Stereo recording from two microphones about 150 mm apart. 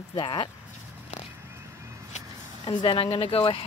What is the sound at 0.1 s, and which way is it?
Speech, 30° left (ahead or behind).